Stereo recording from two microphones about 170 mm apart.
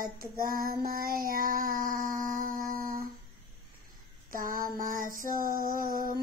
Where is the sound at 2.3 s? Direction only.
55° right (ahead or behind).